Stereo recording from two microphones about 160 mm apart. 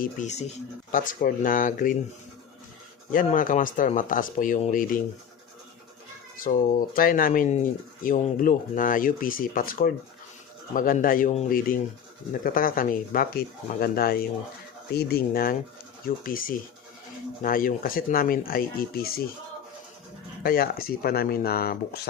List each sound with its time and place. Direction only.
0.0 s speech: 50° left (ahead or behind)
3.2 s speech: 55° left (ahead or behind)
6.4 s speech: 55° left (ahead or behind)
20.4 s speech: 70° left (ahead or behind)